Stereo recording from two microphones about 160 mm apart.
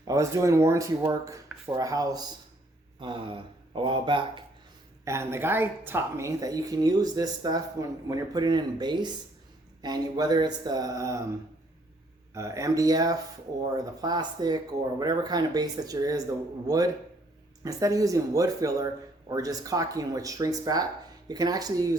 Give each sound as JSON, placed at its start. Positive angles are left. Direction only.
{"t": 0.1, "sound": "speech", "side_deg": -20}
{"t": 5.0, "sound": "speech", "side_deg": -15}
{"t": 12.3, "sound": "speech", "side_deg": -20}